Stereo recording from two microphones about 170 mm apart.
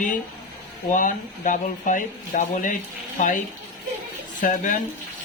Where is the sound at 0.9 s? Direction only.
50° left (ahead or behind).